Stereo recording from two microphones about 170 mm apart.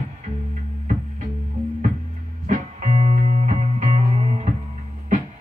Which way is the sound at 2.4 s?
45° right (ahead or behind).